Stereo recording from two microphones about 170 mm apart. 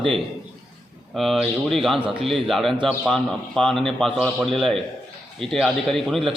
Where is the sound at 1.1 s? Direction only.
Centre (ahead or behind).